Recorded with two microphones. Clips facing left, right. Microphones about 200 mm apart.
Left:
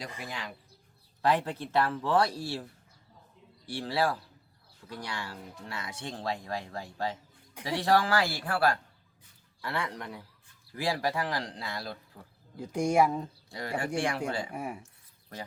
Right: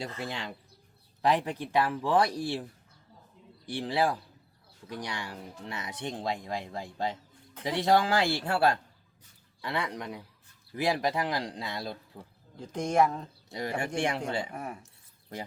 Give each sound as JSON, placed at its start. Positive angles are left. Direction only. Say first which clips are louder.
{"t": 0.3, "sound": "speech", "louder": "right 3 dB", "side_deg": -25}
{"t": 1.2, "sound": "speech", "louder": "right 1 dB", "side_deg": -15}
{"t": 3.7, "sound": "speech", "louder": "right 1 dB", "side_deg": -20}
{"t": 12.5, "sound": "speech", "louder": "left 1 dB", "side_deg": 10}
{"t": 13.5, "sound": "speech", "louder": "right 1 dB", "side_deg": -20}
{"t": 14.5, "sound": "speech", "louder": "left 2 dB", "side_deg": 10}